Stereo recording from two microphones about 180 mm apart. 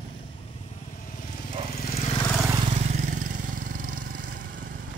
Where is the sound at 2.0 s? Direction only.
35° left (ahead or behind).